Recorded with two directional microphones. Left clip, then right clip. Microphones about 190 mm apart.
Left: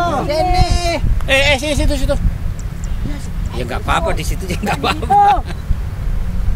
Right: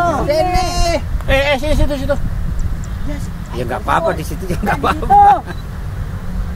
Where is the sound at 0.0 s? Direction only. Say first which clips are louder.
Right 2 dB; 50° right (ahead or behind).